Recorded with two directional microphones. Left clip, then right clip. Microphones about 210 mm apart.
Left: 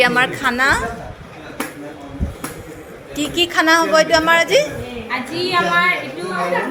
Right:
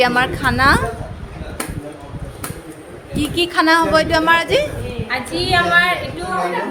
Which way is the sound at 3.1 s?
35° right (ahead or behind).